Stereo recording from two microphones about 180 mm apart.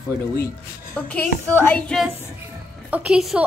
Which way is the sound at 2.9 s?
5° right (ahead or behind).